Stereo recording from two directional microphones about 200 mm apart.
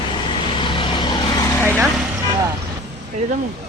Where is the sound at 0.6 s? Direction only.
25° left (ahead or behind).